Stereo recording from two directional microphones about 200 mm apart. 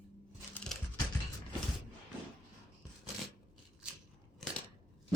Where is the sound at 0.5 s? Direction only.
5° left (ahead or behind).